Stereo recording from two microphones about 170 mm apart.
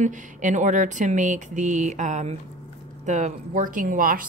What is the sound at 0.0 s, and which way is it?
Speech, 45° right (ahead or behind).